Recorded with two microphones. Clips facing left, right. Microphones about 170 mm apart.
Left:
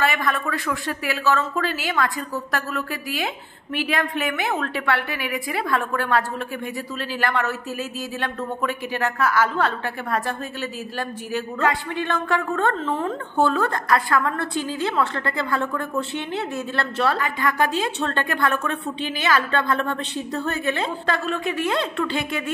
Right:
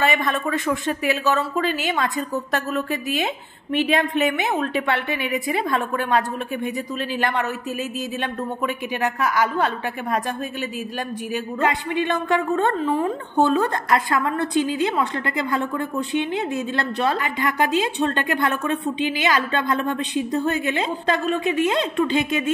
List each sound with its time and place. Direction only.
0.0 s a woman's voice: 20° right (ahead or behind)